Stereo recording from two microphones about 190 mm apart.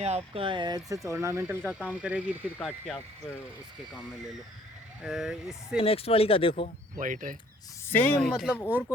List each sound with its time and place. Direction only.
0.0 s speech: 35° right (ahead or behind); by 3.0 s centre (ahead or behind)
5.0 s speech: 5° right (ahead or behind)
5.8 s speech: 30° left (ahead or behind)
6.9 s speech: 45° right (ahead or behind)
7.9 s speech: 10° left (ahead or behind)